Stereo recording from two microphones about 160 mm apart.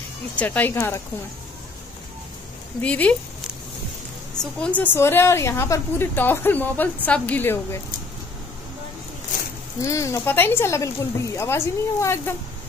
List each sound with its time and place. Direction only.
0.4 s a woman's voice: 10° left (ahead or behind)
2.8 s a woman's voice: 10° left (ahead or behind)
4.4 s a woman's voice: 5° left (ahead or behind)
9.8 s a woman's voice: 20° left (ahead or behind)